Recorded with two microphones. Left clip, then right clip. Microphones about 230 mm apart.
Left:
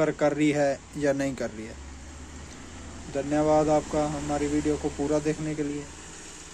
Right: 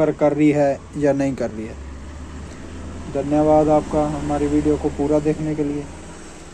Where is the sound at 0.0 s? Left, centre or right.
Centre.